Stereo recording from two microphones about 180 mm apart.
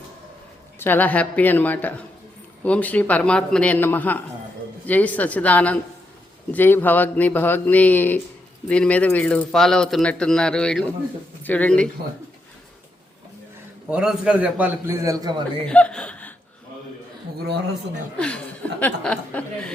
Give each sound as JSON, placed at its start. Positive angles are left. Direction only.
{"t": 0.8, "sound": "speech", "side_deg": 10}
{"t": 13.9, "sound": "a man's voice", "side_deg": -5}
{"t": 15.0, "sound": "a man's voice", "side_deg": -20}
{"t": 15.6, "sound": "chuckle", "side_deg": 5}
{"t": 18.2, "sound": "speech", "side_deg": 5}